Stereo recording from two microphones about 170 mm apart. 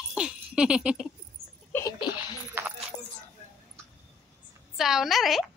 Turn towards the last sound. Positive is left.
turn(degrees=0)  # may be behind; listen again after turning